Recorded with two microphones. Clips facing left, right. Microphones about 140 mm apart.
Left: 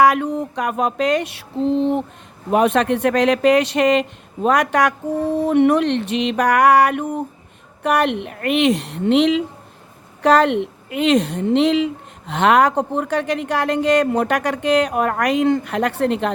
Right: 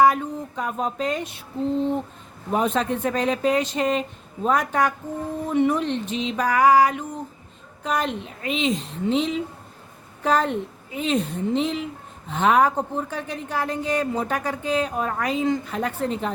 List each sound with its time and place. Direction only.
0.0 s a woman's voice: 75° left (ahead or behind)